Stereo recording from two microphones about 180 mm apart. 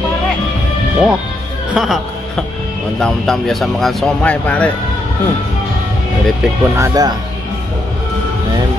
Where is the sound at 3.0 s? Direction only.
Centre (ahead or behind).